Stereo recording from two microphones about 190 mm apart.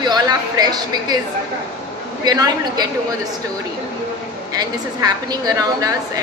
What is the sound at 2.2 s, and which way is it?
Speech, 20° right (ahead or behind).